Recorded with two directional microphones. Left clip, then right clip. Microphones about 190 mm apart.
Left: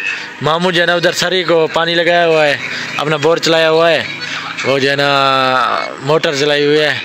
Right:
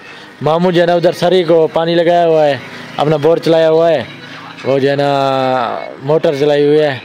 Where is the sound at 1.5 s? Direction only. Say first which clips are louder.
Right 1 dB; 15° left (ahead or behind).